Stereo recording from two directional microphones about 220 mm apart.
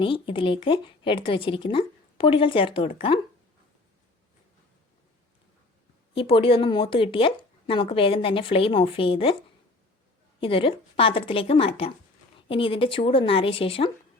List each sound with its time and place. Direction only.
0.0 s speech: 25° left (ahead or behind)
6.1 s speech: 25° left (ahead or behind)
10.4 s speech: 25° left (ahead or behind)